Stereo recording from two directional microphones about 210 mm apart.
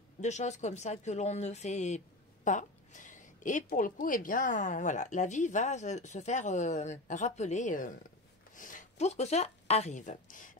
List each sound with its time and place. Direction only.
0.2 s a woman's voice: 35° left (ahead or behind)